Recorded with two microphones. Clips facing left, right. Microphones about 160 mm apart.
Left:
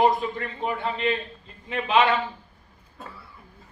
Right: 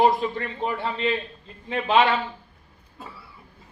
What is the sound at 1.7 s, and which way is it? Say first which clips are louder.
Speech: right 1 dB; 30° right (ahead or behind).